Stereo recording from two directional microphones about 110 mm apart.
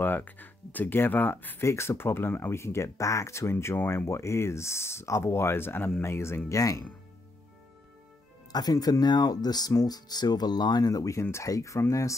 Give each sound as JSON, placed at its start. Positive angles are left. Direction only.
{"t": 0.0, "sound": "speech", "side_deg": 15}
{"t": 8.5, "sound": "speech", "side_deg": 35}